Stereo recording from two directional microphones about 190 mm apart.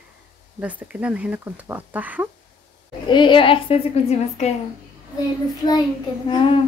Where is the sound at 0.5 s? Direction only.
10° right (ahead or behind).